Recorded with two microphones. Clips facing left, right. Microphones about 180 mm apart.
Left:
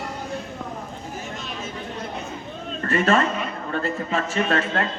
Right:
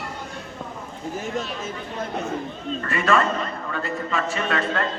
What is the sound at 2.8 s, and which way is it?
A man's voice, 40° left (ahead or behind).